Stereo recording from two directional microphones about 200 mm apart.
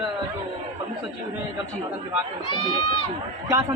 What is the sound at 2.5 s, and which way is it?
Speech, 25° left (ahead or behind).